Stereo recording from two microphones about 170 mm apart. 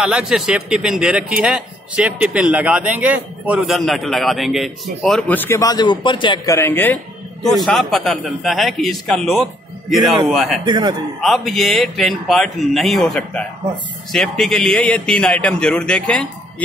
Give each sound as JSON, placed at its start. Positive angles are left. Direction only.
{"t": 0.0, "sound": "a man's voice", "side_deg": -5}
{"t": 7.4, "sound": "a man's voice", "side_deg": 0}
{"t": 10.6, "sound": "a man's voice", "side_deg": -25}
{"t": 11.1, "sound": "a man's voice", "side_deg": 0}